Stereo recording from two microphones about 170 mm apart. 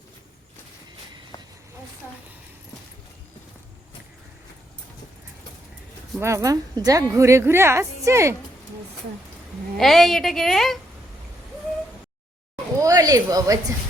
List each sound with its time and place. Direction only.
1.3 s insect: 25° left (ahead or behind)
6.1 s a woman's voice: 15° right (ahead or behind)
9.7 s a woman's voice: centre (ahead or behind)
12.8 s a woman's voice: 20° right (ahead or behind)